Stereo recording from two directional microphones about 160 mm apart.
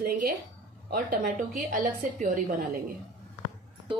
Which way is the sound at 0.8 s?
65° right (ahead or behind).